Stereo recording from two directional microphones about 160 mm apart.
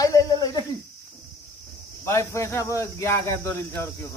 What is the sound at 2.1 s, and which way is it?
Speech, 20° left (ahead or behind).